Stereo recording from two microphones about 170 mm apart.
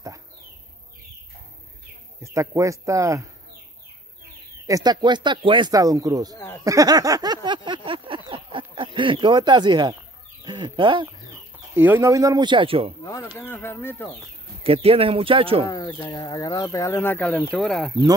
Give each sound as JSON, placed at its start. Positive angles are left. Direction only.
{"t": 2.2, "sound": "speech", "side_deg": -15}
{"t": 4.6, "sound": "speech", "side_deg": -20}
{"t": 6.3, "sound": "a sound", "side_deg": 15}
{"t": 6.6, "sound": "a sound", "side_deg": -20}
{"t": 10.4, "sound": "speech", "side_deg": -25}
{"t": 11.7, "sound": "speech", "side_deg": -10}
{"t": 13.0, "sound": "speech", "side_deg": 15}
{"t": 14.6, "sound": "speech", "side_deg": -35}
{"t": 15.6, "sound": "speech", "side_deg": 20}